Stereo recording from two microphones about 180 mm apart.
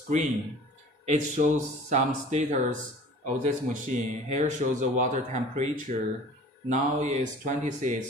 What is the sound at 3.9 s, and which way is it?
Speech, 45° right (ahead or behind).